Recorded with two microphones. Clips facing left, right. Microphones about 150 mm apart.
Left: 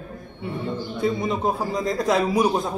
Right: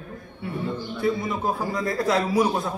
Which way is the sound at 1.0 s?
20° left (ahead or behind).